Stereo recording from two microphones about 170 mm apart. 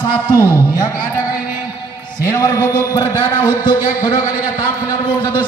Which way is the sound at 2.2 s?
20° left (ahead or behind).